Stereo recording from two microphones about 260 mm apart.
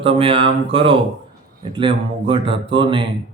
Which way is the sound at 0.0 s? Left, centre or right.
Right.